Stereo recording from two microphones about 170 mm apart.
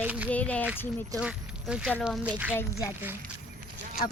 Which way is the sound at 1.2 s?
5° right (ahead or behind).